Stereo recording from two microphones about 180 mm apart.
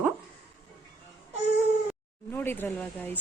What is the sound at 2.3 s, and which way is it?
Speech, 10° left (ahead or behind).